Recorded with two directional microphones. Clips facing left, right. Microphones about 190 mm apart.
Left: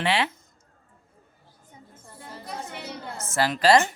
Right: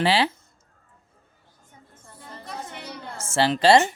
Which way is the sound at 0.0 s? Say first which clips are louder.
Right 4 dB; 35° right (ahead or behind).